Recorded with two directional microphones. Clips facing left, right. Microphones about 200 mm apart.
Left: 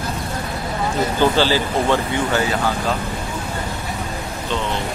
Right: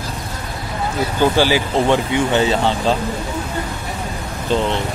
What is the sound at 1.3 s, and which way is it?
Speech, 10° right (ahead or behind).